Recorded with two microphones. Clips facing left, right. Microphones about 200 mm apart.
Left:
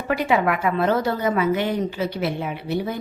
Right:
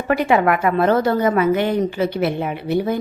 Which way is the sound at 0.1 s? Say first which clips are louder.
Right 4 dB; 55° right (ahead or behind).